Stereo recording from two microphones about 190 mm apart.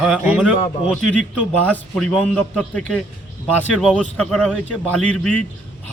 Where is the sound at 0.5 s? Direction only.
35° left (ahead or behind).